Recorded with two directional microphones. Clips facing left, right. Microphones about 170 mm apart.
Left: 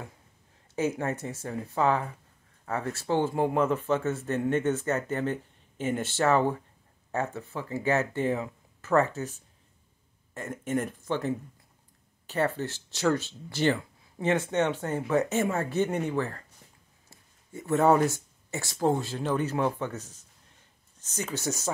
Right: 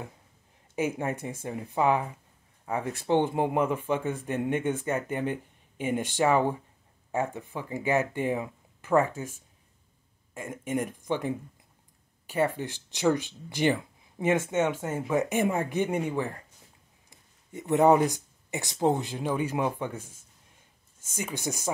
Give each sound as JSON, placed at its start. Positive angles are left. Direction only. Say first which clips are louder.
{"t": 0.7, "sound": "a man's voice", "louder": "left 1 dB", "side_deg": -10}